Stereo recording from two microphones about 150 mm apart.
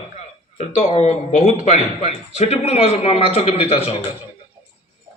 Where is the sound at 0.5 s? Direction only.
45° left (ahead or behind).